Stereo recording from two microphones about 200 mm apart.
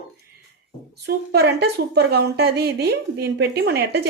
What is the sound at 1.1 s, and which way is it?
A woman's voice, 55° right (ahead or behind).